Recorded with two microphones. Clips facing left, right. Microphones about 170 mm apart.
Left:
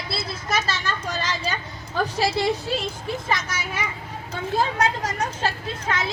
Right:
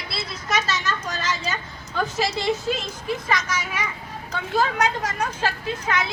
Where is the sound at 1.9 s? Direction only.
35° left (ahead or behind).